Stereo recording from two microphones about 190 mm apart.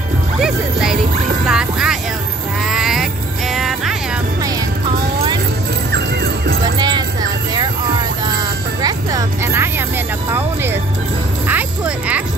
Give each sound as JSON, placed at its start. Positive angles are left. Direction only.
{"t": 0.4, "sound": "music", "side_deg": -5}
{"t": 5.9, "sound": "music", "side_deg": -60}
{"t": 6.8, "sound": "music", "side_deg": -20}
{"t": 8.8, "sound": "music", "side_deg": -15}